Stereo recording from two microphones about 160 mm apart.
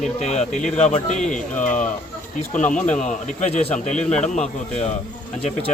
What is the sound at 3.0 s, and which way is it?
A man's voice, 45° left (ahead or behind).